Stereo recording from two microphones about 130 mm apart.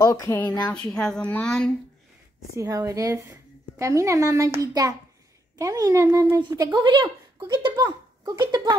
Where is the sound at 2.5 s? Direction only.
25° right (ahead or behind).